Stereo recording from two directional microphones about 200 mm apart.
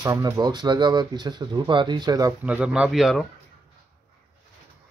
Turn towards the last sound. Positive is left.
turn(degrees=0)  # may be behind; listen again after turning